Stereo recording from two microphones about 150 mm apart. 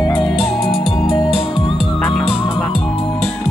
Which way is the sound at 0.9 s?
35° left (ahead or behind).